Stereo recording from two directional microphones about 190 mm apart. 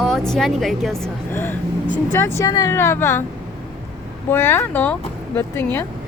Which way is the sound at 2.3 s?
15° left (ahead or behind).